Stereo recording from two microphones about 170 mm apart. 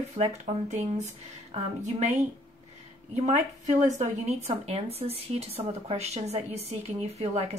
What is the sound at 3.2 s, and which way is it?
A woman's voice, 45° right (ahead or behind).